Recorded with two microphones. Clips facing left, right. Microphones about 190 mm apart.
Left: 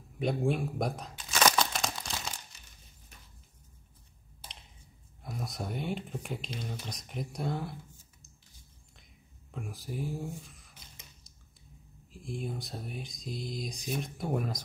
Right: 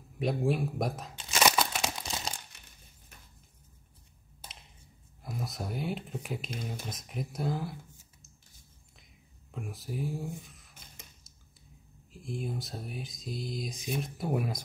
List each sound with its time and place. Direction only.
0.2 s speech: centre (ahead or behind)
1.4 s crumpling: 5° right (ahead or behind)
2.0 s crumpling: 20° right (ahead or behind)
2.5 s a sound: 60° right (ahead or behind)
5.2 s speech: centre (ahead or behind)
9.5 s speech: centre (ahead or behind)
12.1 s speech: centre (ahead or behind)